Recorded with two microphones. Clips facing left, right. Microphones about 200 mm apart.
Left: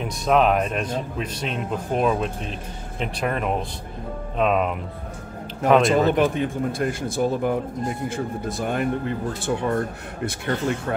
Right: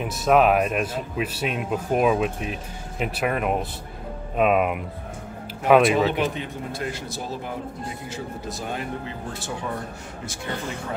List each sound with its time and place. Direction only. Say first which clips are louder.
0.0 s a man's voice: right 1 dB; 5° right (ahead or behind)
6.0 s speech: left 5 dB; 50° left (ahead or behind)